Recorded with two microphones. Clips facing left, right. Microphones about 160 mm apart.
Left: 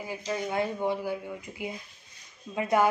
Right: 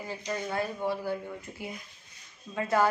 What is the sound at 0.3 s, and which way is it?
Speech, 15° left (ahead or behind).